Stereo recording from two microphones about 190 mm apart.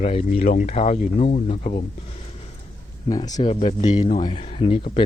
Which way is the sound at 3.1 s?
20° left (ahead or behind).